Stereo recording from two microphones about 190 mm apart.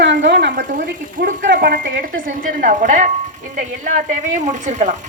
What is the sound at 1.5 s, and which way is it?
Speech, 45° right (ahead or behind).